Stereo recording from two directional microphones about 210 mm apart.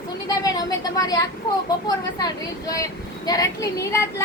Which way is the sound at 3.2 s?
15° left (ahead or behind).